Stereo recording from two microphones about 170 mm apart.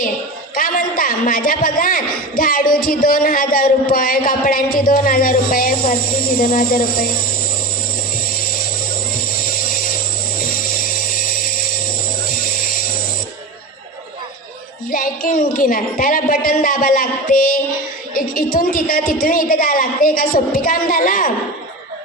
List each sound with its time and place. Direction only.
0.5 s a man's voice: 55° left (ahead or behind)
14.8 s a man's voice: 55° left (ahead or behind)